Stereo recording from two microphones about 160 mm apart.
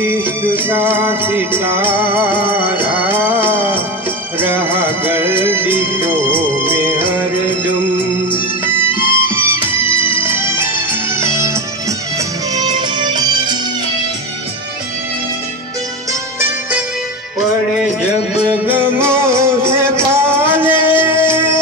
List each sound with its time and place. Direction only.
0.0 s music: 15° right (ahead or behind)
12.5 s music: 25° right (ahead or behind)
18.5 s music: 10° right (ahead or behind)